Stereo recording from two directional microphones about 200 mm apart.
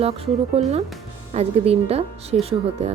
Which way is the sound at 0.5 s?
30° right (ahead or behind).